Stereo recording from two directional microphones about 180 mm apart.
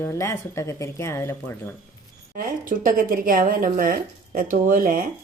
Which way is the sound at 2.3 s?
50° right (ahead or behind).